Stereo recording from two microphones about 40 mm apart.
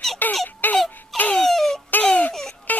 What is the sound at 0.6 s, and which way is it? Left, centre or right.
Crying, left.